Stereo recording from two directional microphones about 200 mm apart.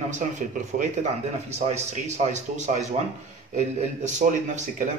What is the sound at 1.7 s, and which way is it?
Speech, 35° right (ahead or behind).